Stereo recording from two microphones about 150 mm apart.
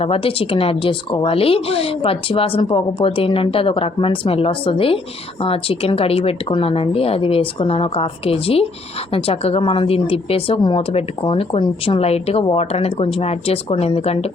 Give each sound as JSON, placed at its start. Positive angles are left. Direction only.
{"t": 0.0, "sound": "speech", "side_deg": 40}